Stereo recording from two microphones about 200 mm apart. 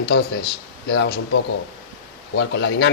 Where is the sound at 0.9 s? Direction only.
60° left (ahead or behind).